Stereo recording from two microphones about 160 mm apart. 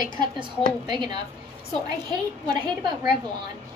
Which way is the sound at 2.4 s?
25° right (ahead or behind).